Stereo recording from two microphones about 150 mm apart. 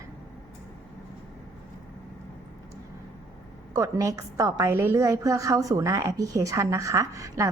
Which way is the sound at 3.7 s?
20° right (ahead or behind).